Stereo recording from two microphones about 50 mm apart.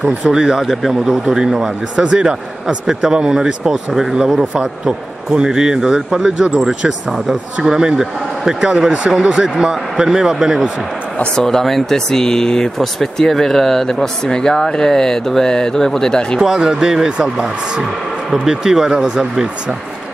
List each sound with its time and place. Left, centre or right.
0.0 s a man's voice: centre
1.2 s a man's voice: centre
11.3 s speech: centre
16.3 s a man's voice: centre